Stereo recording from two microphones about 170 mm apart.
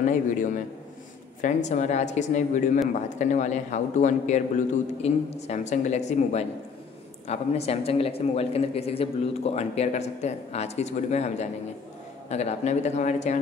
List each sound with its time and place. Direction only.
0.0 s a man's voice: 50° left (ahead or behind)